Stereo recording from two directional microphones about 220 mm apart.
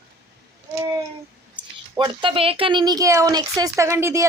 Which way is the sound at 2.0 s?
20° right (ahead or behind).